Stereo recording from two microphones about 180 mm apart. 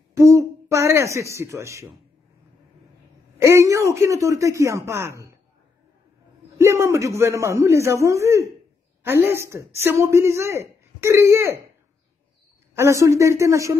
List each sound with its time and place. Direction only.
0.1 s a sound: 15° right (ahead or behind)
3.3 s speech: 15° right (ahead or behind)
6.6 s speech: 15° right (ahead or behind)
12.7 s speech: 15° right (ahead or behind)